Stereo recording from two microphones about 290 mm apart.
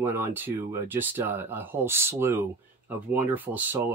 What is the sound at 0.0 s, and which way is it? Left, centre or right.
Speech, centre.